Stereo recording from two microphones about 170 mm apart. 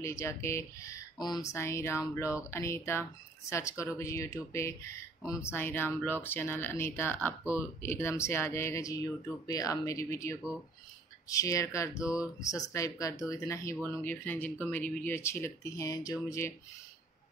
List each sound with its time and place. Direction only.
0.0 s speech: 15° left (ahead or behind)
12.0 s speech: 5° right (ahead or behind)
12.4 s speech: 20° left (ahead or behind)